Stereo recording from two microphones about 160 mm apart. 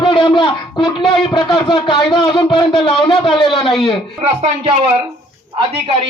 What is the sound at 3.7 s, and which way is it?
Speech, centre (ahead or behind).